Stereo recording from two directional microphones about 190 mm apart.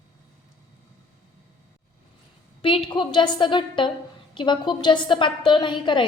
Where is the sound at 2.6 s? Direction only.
25° left (ahead or behind).